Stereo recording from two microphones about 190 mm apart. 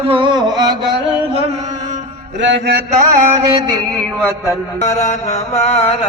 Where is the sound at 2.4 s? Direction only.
70° right (ahead or behind).